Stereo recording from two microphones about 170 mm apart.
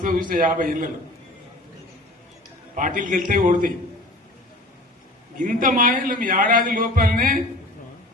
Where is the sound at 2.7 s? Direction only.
50° right (ahead or behind).